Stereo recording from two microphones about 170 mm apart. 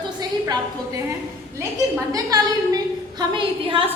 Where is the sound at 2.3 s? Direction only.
20° right (ahead or behind).